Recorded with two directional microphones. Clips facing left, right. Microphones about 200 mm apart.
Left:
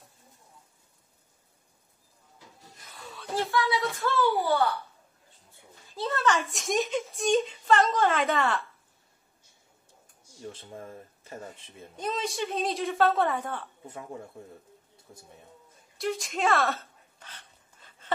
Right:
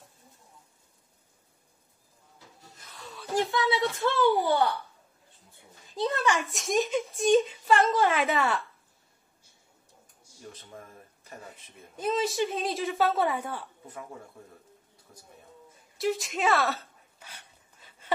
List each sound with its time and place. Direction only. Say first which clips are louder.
3.6 s speech: right 2 dB; 30° right (ahead or behind)
4.0 s a woman's voice: right 2 dB; 15° right (ahead or behind)
5.9 s a woman's voice: even; 15° right (ahead or behind)
6.5 s a woman's voice: right 1 dB; centre (ahead or behind)
8.0 s a woman's voice: even; 10° right (ahead or behind)
10.5 s speech: left 5 dB; 30° left (ahead or behind)
12.0 s a woman's voice: right 4 dB; 5° right (ahead or behind)
15.1 s speech: left 4 dB; 25° left (ahead or behind)
16.0 s a sound: right 1 dB; centre (ahead or behind)